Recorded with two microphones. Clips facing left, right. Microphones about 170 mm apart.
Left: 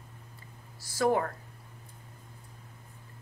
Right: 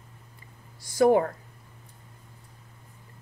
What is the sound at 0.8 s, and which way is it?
Speech, 20° right (ahead or behind).